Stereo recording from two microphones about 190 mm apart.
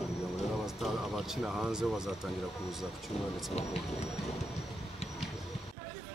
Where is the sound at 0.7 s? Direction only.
Centre (ahead or behind).